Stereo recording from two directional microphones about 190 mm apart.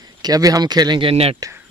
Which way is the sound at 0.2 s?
20° right (ahead or behind).